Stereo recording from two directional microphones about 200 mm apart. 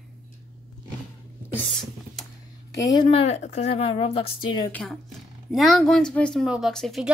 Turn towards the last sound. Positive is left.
turn(degrees=0)  # may be behind; listen again after turning